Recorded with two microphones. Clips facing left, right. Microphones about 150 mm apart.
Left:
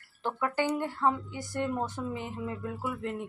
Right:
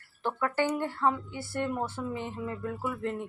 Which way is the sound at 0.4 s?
15° left (ahead or behind).